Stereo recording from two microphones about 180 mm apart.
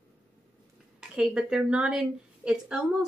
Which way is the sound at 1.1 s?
5° right (ahead or behind).